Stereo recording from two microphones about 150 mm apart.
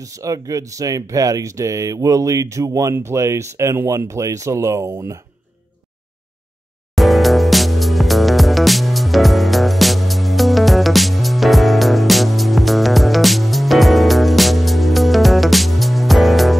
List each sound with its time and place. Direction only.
0.0 s speech: 20° right (ahead or behind)
7.0 s music: centre (ahead or behind)